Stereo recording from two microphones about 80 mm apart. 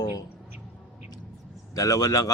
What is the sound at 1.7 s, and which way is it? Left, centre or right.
Speech, left.